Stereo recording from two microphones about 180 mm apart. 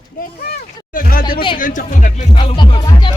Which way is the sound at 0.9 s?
55° left (ahead or behind).